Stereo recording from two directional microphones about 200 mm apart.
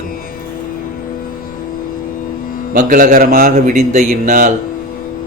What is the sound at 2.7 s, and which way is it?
A man's voice, 40° right (ahead or behind).